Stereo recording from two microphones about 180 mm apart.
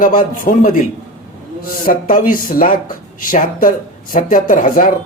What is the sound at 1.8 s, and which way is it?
A man's voice, 50° left (ahead or behind).